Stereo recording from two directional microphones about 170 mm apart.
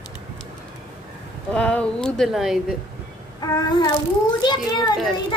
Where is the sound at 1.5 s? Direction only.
5° left (ahead or behind).